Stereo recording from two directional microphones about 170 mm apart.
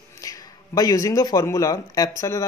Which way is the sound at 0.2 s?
20° left (ahead or behind).